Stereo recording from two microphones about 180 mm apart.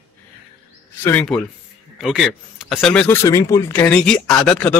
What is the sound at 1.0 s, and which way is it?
Speech, 10° left (ahead or behind).